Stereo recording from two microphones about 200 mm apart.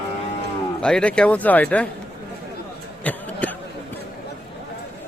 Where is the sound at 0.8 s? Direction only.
5° left (ahead or behind).